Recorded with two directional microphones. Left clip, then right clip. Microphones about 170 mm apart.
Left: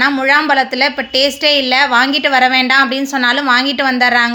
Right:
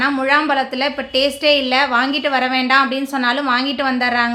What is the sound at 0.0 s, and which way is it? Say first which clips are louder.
A woman's voice: left 4 dB; 15° left (ahead or behind).